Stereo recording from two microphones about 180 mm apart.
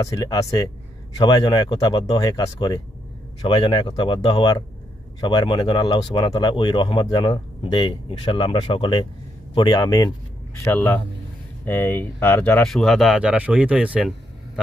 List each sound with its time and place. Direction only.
0.0 s speech: 20° left (ahead or behind)
10.6 s a man's voice: 10° left (ahead or behind)